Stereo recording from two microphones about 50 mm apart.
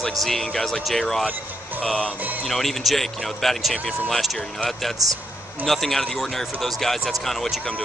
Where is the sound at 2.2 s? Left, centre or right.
Right.